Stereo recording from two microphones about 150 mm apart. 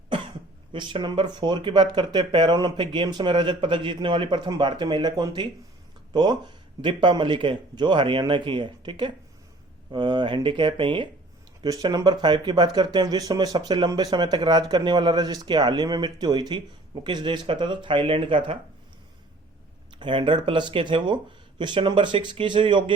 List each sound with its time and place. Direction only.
0.7 s speech: 35° right (ahead or behind)
19.9 s speech: 35° right (ahead or behind)